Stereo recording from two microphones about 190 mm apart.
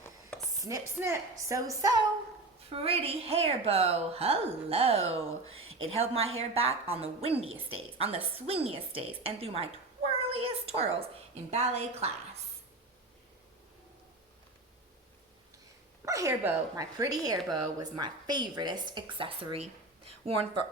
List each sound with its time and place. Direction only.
0.6 s a woman's voice: 15° right (ahead or behind)
2.6 s a woman's voice: 30° right (ahead or behind)
16.0 s speech: 15° right (ahead or behind)